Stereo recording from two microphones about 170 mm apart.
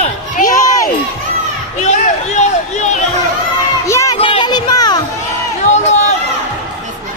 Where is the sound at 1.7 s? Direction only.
45° left (ahead or behind).